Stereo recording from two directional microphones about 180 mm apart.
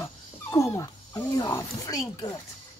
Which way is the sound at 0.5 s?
15° left (ahead or behind).